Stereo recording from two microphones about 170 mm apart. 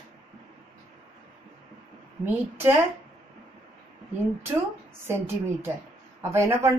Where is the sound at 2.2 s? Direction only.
15° right (ahead or behind).